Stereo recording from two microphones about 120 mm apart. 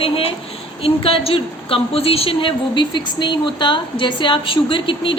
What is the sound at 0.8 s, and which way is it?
A woman's voice, 50° left (ahead or behind).